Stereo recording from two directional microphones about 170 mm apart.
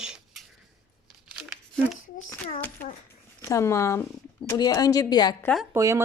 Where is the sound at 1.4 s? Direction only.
Centre (ahead or behind).